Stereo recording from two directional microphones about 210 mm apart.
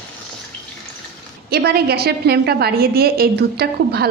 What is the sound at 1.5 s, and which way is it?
A woman's voice, 50° right (ahead or behind).